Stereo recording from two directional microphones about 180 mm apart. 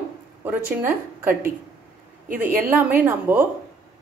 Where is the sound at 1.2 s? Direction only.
15° right (ahead or behind).